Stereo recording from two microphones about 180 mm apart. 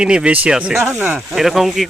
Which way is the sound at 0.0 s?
5° right (ahead or behind).